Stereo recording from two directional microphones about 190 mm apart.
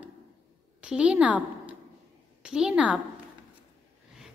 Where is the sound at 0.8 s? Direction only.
5° right (ahead or behind).